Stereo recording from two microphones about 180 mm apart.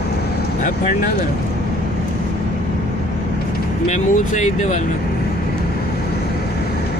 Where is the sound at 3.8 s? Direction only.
40° left (ahead or behind).